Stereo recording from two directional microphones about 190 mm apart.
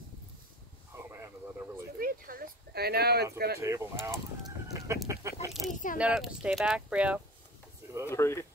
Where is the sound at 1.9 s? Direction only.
50° right (ahead or behind).